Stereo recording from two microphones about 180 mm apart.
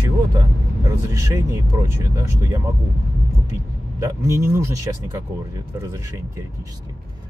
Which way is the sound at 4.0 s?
15° right (ahead or behind).